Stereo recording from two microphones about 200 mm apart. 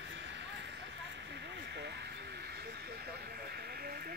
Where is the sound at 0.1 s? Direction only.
60° right (ahead or behind).